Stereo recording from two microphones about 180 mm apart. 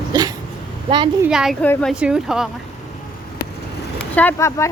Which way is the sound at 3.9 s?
10° left (ahead or behind).